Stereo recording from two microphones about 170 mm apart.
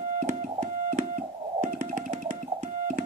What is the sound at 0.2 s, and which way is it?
Music, 50° right (ahead or behind).